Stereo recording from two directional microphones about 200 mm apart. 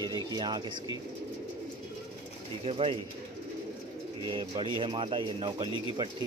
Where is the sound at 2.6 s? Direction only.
30° right (ahead or behind).